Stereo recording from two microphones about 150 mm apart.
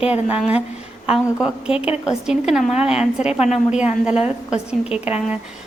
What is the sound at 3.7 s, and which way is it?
A woman's voice, 5° right (ahead or behind).